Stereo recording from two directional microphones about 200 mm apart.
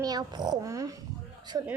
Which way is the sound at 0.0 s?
20° right (ahead or behind).